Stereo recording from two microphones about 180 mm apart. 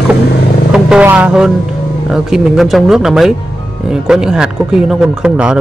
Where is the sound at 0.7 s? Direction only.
5° right (ahead or behind).